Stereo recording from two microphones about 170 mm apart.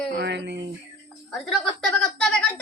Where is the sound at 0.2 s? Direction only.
90° right.